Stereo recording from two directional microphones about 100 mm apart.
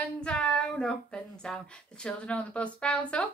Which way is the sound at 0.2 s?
10° left (ahead or behind).